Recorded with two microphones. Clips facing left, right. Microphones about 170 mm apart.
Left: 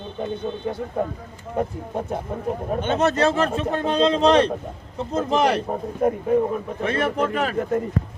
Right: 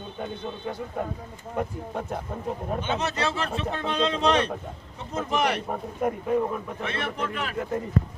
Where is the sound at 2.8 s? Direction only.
50° left (ahead or behind); by 6.3 s 30° left (ahead or behind).